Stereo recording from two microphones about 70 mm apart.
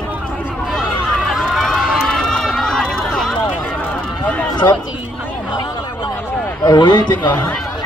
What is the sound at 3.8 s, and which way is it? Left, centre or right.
Run, left.